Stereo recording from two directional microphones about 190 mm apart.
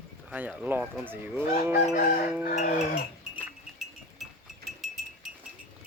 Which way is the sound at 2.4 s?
40° left (ahead or behind).